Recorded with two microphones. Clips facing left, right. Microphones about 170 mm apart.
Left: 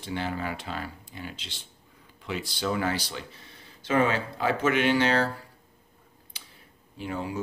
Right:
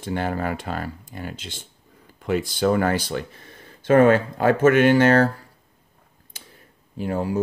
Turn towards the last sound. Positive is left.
turn(degrees=-45)  # may be behind; listen again after turning